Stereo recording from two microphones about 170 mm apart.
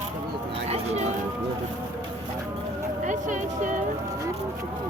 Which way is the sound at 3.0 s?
45° right (ahead or behind).